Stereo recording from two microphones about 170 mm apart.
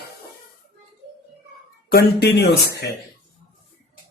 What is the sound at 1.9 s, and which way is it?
Speech, 70° left (ahead or behind).